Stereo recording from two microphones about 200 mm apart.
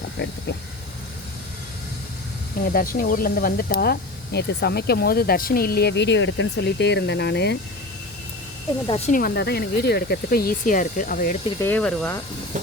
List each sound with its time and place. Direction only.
0.2 s speech: 60° left (ahead or behind)
2.6 s speech: 45° left (ahead or behind)
8.9 s speech: 40° left (ahead or behind)
11.6 s speech: 5° left (ahead or behind)